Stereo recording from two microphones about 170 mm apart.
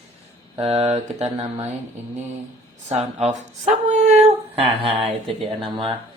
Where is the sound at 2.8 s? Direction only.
40° right (ahead or behind).